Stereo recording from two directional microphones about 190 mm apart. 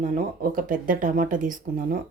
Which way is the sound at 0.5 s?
45° right (ahead or behind).